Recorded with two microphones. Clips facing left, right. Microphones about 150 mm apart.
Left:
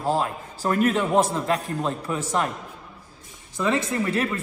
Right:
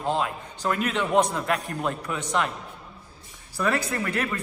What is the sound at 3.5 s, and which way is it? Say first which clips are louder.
Speech: left 2 dB; 25° left (ahead or behind).